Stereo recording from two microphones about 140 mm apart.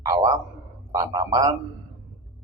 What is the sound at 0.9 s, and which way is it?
Speech, 30° right (ahead or behind).